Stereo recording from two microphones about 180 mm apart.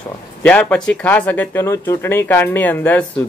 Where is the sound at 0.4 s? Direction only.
10° left (ahead or behind).